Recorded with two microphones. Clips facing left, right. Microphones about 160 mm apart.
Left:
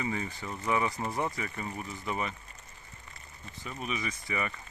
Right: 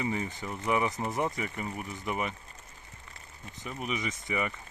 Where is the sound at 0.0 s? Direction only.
20° right (ahead or behind).